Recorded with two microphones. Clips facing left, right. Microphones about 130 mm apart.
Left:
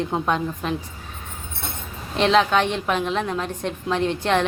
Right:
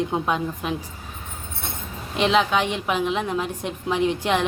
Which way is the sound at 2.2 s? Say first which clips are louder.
Left 2 dB; 10° right (ahead or behind).